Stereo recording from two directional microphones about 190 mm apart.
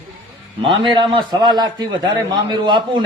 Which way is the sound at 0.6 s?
25° right (ahead or behind).